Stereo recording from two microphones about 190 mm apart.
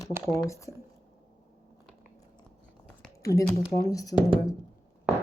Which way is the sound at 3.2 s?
15° left (ahead or behind).